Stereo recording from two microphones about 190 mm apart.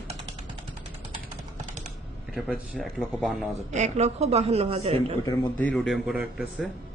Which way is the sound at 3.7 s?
35° right (ahead or behind).